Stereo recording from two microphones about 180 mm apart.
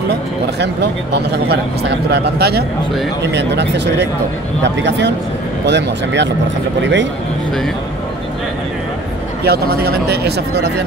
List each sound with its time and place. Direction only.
1.1 s a man's voice: 65° right (ahead or behind)
3.3 s speech: 75° right (ahead or behind)
6.8 s speech: 90° right
9.5 s a man's voice: 65° right (ahead or behind)